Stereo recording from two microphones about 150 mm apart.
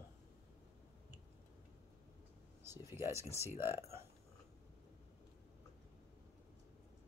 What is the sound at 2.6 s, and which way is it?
Speech, 15° right (ahead or behind).